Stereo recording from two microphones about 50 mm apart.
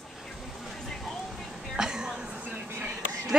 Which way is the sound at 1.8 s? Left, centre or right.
Centre.